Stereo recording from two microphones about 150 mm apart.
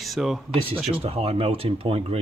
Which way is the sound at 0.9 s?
40° right (ahead or behind).